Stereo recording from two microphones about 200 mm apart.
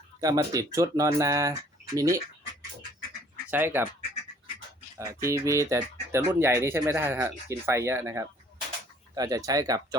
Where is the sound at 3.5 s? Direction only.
10° right (ahead or behind).